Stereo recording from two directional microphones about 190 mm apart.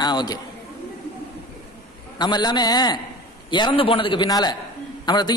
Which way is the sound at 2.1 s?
20° left (ahead or behind).